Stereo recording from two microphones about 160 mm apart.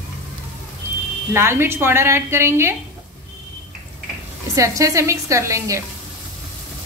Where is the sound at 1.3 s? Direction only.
15° right (ahead or behind).